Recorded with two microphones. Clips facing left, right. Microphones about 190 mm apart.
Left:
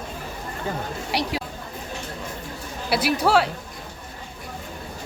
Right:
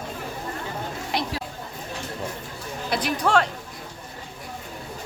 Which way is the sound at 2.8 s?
5° left (ahead or behind).